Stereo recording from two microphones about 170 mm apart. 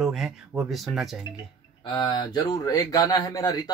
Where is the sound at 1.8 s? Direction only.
25° left (ahead or behind).